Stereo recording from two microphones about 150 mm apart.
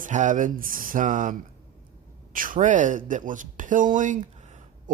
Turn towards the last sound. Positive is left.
turn(degrees=-55)  # may be behind; listen again after turning